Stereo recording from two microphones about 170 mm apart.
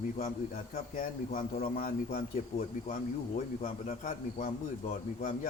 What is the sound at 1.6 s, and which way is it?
A man's voice, 55° left (ahead or behind).